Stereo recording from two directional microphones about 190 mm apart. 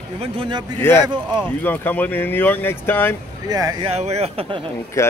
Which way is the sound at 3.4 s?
20° right (ahead or behind).